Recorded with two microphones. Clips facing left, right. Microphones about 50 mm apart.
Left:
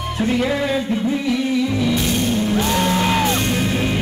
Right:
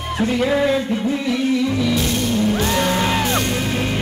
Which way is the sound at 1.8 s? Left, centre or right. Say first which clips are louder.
Even; centre.